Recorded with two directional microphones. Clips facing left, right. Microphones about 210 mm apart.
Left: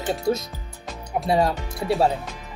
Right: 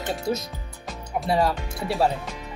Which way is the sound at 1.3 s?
25° left (ahead or behind).